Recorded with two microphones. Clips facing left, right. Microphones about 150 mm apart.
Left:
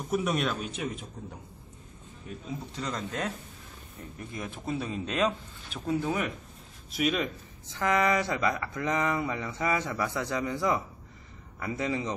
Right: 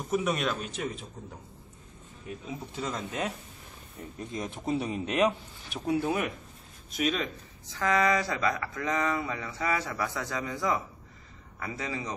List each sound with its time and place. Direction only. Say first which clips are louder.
0.0 s speech: even; centre (ahead or behind)
2.2 s speech: even; 5° right (ahead or behind)
6.9 s speech: left 1 dB; 5° left (ahead or behind)
7.8 s speech: even; 15° left (ahead or behind)